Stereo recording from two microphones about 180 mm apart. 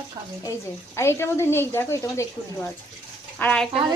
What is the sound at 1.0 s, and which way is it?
Speech, 15° left (ahead or behind).